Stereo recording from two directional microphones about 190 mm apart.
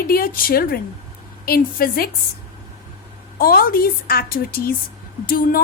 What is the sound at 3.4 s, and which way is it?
A woman's voice, 50° left (ahead or behind).